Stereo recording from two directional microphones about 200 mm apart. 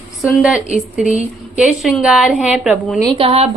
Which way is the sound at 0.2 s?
Centre (ahead or behind).